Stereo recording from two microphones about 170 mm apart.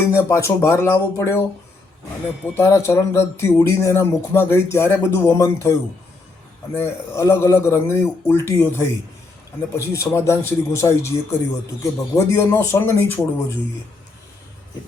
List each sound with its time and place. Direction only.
0.3 s speech: 15° left (ahead or behind)
2.6 s speech: 15° left (ahead or behind)
6.7 s speech: 15° left (ahead or behind)